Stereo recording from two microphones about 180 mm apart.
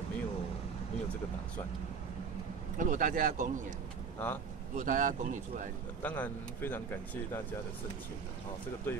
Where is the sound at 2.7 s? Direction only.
45° right (ahead or behind).